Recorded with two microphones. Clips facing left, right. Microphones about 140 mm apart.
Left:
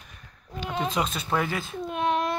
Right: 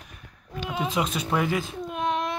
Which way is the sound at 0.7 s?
10° right (ahead or behind).